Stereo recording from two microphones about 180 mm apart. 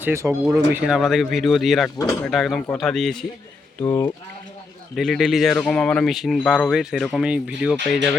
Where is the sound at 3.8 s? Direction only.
15° left (ahead or behind).